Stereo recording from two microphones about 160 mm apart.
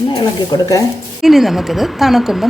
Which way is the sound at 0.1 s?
25° left (ahead or behind).